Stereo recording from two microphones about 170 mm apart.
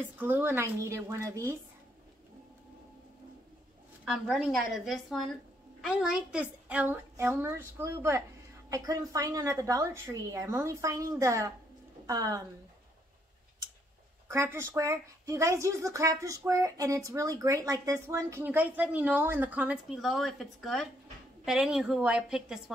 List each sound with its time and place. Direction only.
0.2 s a woman's voice: 10° right (ahead or behind)
4.0 s a woman's voice: centre (ahead or behind); by 12.4 s 20° right (ahead or behind)
14.2 s a woman's voice: 15° right (ahead or behind)